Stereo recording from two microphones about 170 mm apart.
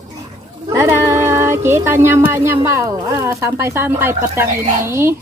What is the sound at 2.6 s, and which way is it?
A child's voice, 15° right (ahead or behind).